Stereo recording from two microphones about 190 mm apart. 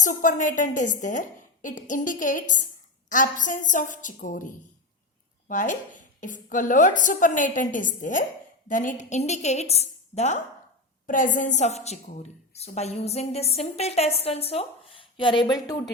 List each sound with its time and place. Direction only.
0.0 s a woman's voice: 45° left (ahead or behind); by 15.8 s 20° left (ahead or behind)